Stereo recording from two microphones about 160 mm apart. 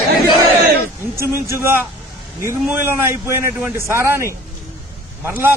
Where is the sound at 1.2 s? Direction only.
15° right (ahead or behind).